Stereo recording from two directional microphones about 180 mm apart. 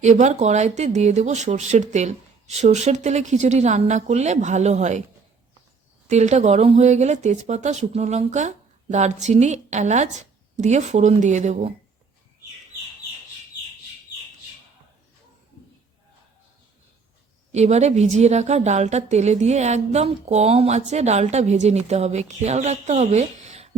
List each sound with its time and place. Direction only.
0.0 s a woman's voice: 40° right (ahead or behind)
6.1 s a woman's voice: 40° right (ahead or behind)
17.5 s a woman's voice: 40° right (ahead or behind)